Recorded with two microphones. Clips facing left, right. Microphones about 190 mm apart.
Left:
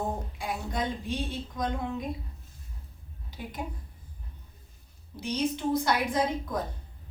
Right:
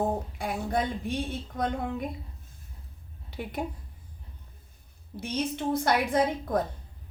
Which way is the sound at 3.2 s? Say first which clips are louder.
Right 5 dB; 60° right (ahead or behind).